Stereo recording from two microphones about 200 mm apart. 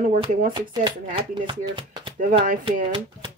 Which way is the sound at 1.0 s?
30° right (ahead or behind).